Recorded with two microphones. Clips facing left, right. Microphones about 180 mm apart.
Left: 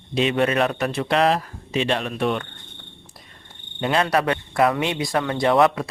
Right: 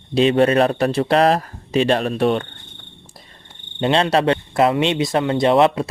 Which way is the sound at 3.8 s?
30° right (ahead or behind).